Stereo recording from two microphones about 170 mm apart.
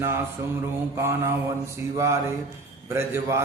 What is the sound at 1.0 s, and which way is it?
Speech, 15° right (ahead or behind).